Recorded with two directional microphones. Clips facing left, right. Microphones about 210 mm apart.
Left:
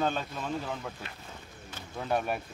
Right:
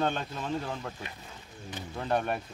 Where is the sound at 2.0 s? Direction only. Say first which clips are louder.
Right 1 dB; 5° left (ahead or behind).